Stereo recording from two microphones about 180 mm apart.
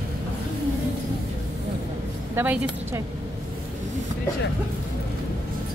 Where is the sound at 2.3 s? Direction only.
10° right (ahead or behind).